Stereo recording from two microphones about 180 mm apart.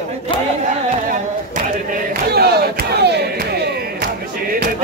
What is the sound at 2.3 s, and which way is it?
Crowd, 60° right (ahead or behind).